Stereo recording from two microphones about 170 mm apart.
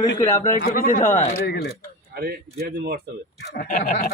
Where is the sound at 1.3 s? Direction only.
65° left (ahead or behind).